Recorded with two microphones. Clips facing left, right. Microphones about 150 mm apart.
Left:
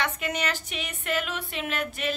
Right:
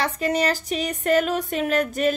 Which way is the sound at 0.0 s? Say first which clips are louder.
Right 7 dB; 35° right (ahead or behind).